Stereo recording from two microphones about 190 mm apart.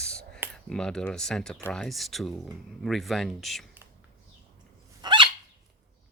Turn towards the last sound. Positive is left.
turn(degrees=-25)  # may be behind; listen again after turning